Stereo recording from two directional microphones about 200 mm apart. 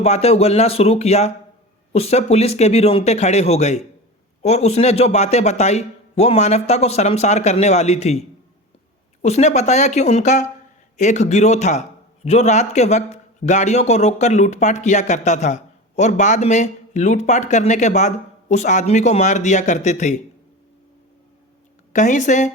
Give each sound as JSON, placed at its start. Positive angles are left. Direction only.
{"t": 0.0, "sound": "a man's voice", "side_deg": 30}
{"t": 9.2, "sound": "a man's voice", "side_deg": 35}
{"t": 21.9, "sound": "a man's voice", "side_deg": 40}